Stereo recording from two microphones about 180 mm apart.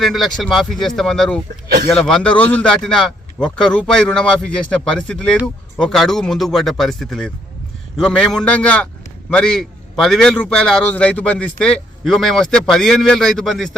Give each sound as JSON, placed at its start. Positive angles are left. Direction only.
{"t": 0.0, "sound": "a man's voice", "side_deg": 0}
{"t": 1.6, "sound": "a sound", "side_deg": -55}
{"t": 1.9, "sound": "a man's voice", "side_deg": 0}